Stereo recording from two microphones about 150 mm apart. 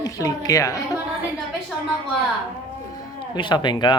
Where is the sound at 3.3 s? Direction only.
30° left (ahead or behind).